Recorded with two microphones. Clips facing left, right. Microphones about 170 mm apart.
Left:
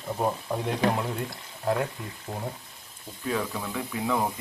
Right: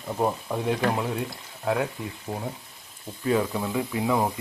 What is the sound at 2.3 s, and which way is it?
Speech, 15° right (ahead or behind).